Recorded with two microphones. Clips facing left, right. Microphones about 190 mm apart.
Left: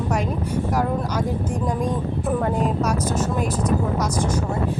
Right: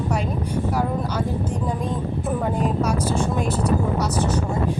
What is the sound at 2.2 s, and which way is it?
Speech, 5° right (ahead or behind).